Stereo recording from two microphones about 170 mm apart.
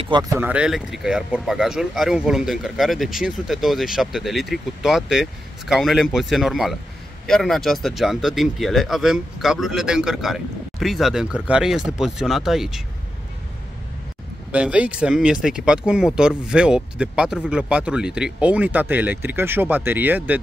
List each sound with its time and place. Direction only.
0.0 s speech: 25° right (ahead or behind)
0.4 s speech: 5° right (ahead or behind)
14.5 s speech: 5° right (ahead or behind)